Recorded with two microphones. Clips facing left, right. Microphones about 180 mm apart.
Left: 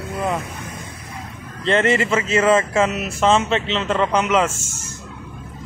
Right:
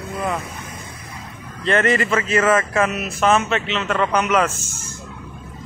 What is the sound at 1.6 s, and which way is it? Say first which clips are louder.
Speech: left 1 dB; 20° left (ahead or behind).